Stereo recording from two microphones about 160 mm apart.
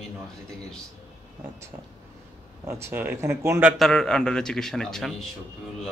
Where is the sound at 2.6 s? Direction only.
15° right (ahead or behind).